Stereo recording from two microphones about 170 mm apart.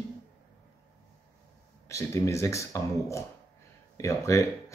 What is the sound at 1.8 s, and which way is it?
Speech, 15° left (ahead or behind).